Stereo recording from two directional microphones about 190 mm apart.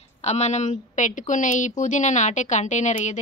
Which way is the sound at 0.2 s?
35° left (ahead or behind).